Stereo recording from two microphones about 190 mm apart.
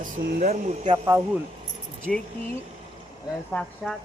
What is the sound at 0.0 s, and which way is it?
Speech, 45° right (ahead or behind).